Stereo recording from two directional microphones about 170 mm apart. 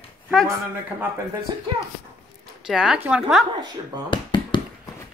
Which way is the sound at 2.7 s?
5° right (ahead or behind).